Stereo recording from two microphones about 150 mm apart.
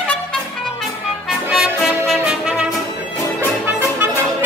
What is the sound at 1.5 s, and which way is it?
Music, centre (ahead or behind).